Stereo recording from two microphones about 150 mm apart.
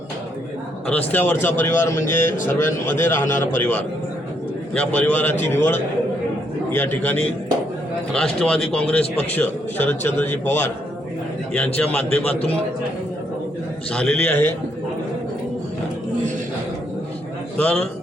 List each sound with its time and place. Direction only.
0.9 s a man's voice: 10° left (ahead or behind)
13.9 s a man's voice: 5° left (ahead or behind)
17.6 s a man's voice: 5° left (ahead or behind)